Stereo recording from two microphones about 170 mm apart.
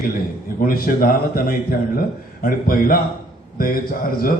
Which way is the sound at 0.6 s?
60° left (ahead or behind).